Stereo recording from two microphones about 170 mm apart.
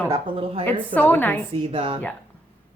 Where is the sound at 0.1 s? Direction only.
35° right (ahead or behind).